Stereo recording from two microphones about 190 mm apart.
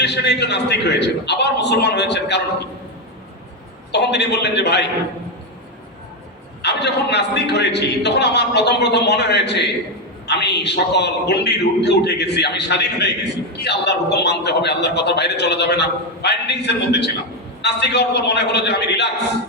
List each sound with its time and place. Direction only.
0.0 s a man's voice: 65° left (ahead or behind)
3.9 s a man's voice: 65° left (ahead or behind)
6.6 s a man's voice: 60° left (ahead or behind)